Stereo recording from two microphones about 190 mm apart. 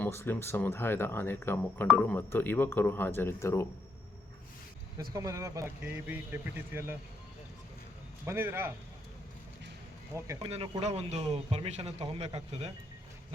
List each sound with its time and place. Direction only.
0.0 s speech: 10° left (ahead or behind)
5.1 s a man's voice: 15° right (ahead or behind)
8.2 s a man's voice: 10° right (ahead or behind)
10.2 s a man's voice: 15° right (ahead or behind)
10.5 s a man's voice: 35° right (ahead or behind)